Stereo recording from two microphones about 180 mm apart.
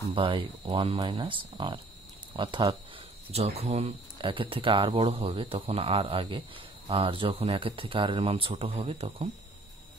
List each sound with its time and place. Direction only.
0.1 s speech: 30° right (ahead or behind)